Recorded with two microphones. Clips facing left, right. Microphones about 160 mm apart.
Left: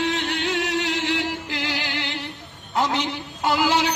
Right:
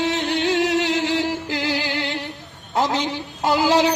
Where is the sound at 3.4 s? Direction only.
35° right (ahead or behind).